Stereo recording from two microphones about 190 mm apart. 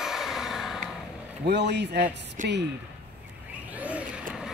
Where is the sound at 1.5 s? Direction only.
60° right (ahead or behind).